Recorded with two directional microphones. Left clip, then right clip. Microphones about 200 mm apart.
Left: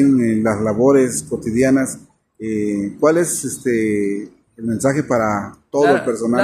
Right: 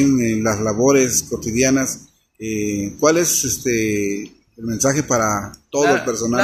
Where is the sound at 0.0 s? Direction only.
15° right (ahead or behind).